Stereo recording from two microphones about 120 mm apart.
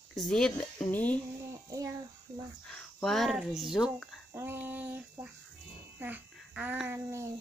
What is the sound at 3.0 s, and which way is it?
Speech, centre (ahead or behind).